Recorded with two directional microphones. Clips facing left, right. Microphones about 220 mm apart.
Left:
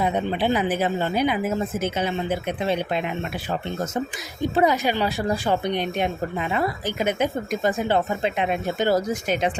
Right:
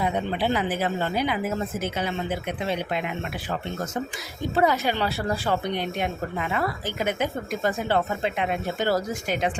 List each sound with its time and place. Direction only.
0.0 s speech: 20° left (ahead or behind)
4.5 s speech: 15° left (ahead or behind)